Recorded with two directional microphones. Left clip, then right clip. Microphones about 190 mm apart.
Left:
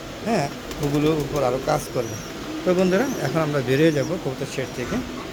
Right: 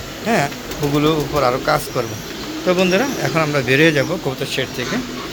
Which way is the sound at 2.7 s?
15° left (ahead or behind).